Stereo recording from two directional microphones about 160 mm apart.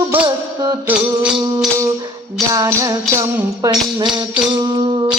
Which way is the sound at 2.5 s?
20° right (ahead or behind).